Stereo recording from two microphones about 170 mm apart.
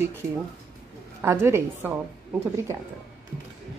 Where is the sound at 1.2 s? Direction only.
15° right (ahead or behind).